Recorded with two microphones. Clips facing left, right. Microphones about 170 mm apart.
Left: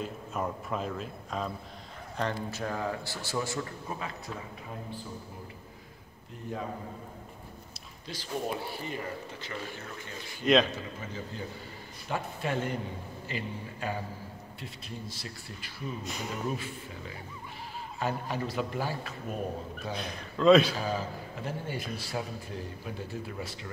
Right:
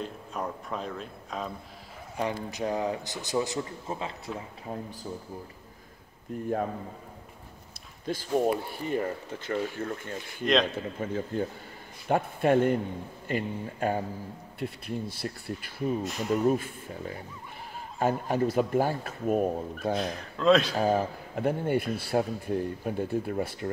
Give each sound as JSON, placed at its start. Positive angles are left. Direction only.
{"t": 0.0, "sound": "a man's voice", "side_deg": 0}
{"t": 2.1, "sound": "a man's voice", "side_deg": -15}
{"t": 8.0, "sound": "speech", "side_deg": -50}
{"t": 10.4, "sound": "a man's voice", "side_deg": 5}
{"t": 10.7, "sound": "speech", "side_deg": -55}
{"t": 16.0, "sound": "a man's voice", "side_deg": 0}
{"t": 16.4, "sound": "speech", "side_deg": -50}
{"t": 20.0, "sound": "a man's voice", "side_deg": 0}
{"t": 20.8, "sound": "speech", "side_deg": -55}